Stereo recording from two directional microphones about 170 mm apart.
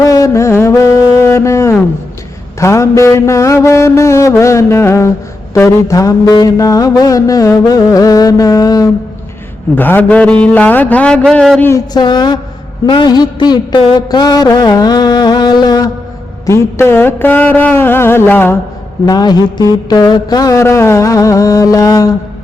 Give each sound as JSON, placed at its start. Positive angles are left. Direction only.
{"t": 0.0, "sound": "mantra", "side_deg": 20}
{"t": 9.7, "sound": "mantra", "side_deg": 10}
{"t": 11.6, "sound": "mantra", "side_deg": 20}
{"t": 12.8, "sound": "a sound", "side_deg": 25}
{"t": 16.5, "sound": "mantra", "side_deg": 15}
{"t": 19.0, "sound": "mantra", "side_deg": 25}